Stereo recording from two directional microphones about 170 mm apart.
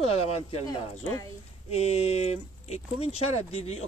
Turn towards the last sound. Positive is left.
turn(degrees=40)  # may be behind; listen again after turning